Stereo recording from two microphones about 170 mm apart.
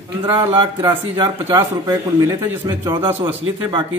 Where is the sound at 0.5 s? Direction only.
30° right (ahead or behind).